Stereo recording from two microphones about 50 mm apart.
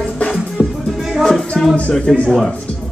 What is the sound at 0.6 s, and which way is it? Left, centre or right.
Music, centre.